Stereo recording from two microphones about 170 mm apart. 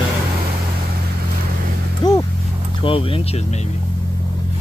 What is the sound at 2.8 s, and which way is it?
Speech, 30° left (ahead or behind).